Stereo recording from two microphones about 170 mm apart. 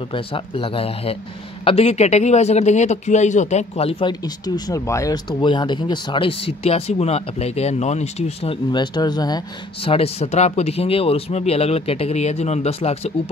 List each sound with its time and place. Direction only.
0.1 s speech: 30° left (ahead or behind)
4.6 s speech: 20° left (ahead or behind)
9.8 s speech: 35° left (ahead or behind)